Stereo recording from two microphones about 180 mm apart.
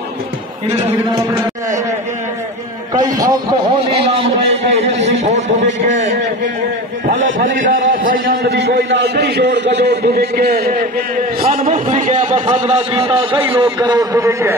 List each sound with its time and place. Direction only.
2.9 s a sound: 20° right (ahead or behind)
3.9 s a sound: 30° right (ahead or behind)
7.1 s a man's voice: 45° right (ahead or behind); by 10.9 s 60° right (ahead or behind)
11.5 s a man's voice: 40° right (ahead or behind)
13.4 s a man's voice: 10° right (ahead or behind)
13.7 s a man's voice: 20° right (ahead or behind)